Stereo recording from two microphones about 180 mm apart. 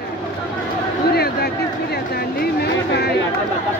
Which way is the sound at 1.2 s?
60° left (ahead or behind).